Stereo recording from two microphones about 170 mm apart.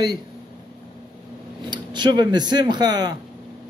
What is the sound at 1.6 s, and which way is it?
Speech, 25° right (ahead or behind).